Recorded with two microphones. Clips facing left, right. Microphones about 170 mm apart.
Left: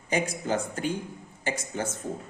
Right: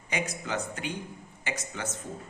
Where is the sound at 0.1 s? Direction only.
40° left (ahead or behind).